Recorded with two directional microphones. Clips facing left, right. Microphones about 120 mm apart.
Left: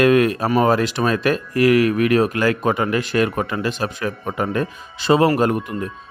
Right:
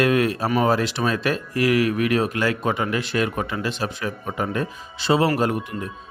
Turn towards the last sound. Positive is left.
turn(degrees=50)  # may be behind; listen again after turning